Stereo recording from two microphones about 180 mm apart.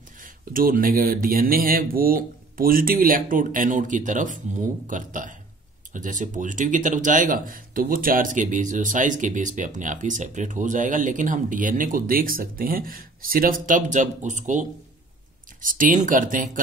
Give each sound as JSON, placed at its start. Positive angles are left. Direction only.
{"t": 0.2, "sound": "speech", "side_deg": -50}